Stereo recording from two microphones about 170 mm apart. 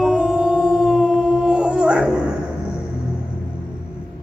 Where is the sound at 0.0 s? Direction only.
5° right (ahead or behind).